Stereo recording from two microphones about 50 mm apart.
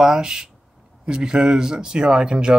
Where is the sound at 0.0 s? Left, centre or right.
Centre.